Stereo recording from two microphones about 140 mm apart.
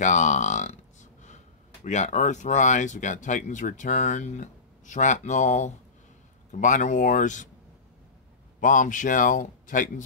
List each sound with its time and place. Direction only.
0.0 s speech: 60° left (ahead or behind)
1.9 s speech: 55° left (ahead or behind)
8.5 s a man's voice: 70° left (ahead or behind)